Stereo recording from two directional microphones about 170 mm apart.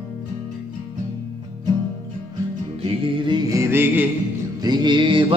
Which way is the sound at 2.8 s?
30° right (ahead or behind).